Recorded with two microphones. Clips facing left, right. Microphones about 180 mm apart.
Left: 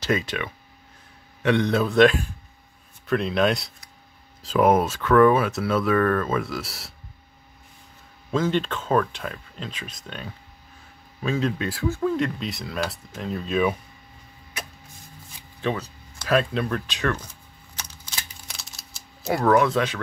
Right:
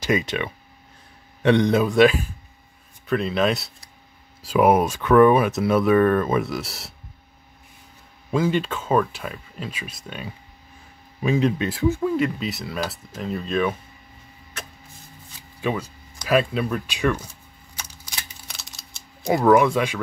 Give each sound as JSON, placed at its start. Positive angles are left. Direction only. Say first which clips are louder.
{"t": 0.0, "sound": "speech", "louder": "right 2 dB", "side_deg": -15}
{"t": 8.3, "sound": "speech", "louder": "right 1 dB", "side_deg": -10}
{"t": 12.1, "sound": "speech", "louder": "right 2 dB", "side_deg": -5}
{"t": 15.6, "sound": "speech", "louder": "right 1 dB", "side_deg": -10}
{"t": 18.5, "sound": "a sound", "louder": "even", "side_deg": 0}
{"t": 19.2, "sound": "speech", "louder": "right 3 dB", "side_deg": -10}